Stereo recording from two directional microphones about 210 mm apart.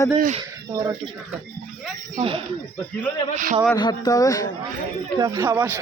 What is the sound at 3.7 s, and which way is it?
Speech, 20° left (ahead or behind).